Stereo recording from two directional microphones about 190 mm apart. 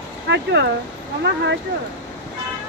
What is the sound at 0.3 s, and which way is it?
Speech, 65° right (ahead or behind).